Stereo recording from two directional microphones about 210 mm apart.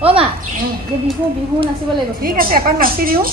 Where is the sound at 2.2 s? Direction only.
45° right (ahead or behind).